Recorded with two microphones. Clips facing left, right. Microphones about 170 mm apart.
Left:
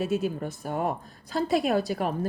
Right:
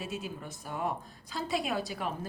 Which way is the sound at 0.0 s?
60° left (ahead or behind).